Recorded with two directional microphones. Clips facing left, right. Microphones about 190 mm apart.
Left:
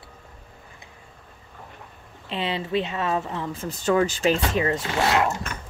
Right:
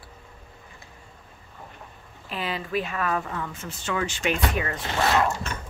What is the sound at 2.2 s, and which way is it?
Speech, 25° left (ahead or behind).